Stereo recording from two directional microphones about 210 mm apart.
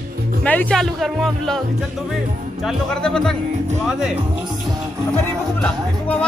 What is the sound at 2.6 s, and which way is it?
Speech, centre (ahead or behind).